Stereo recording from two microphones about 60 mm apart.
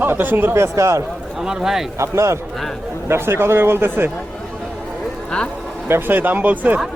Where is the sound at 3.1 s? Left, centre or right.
Right.